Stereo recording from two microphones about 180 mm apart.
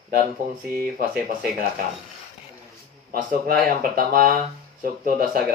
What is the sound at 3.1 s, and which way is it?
Speech, 55° right (ahead or behind).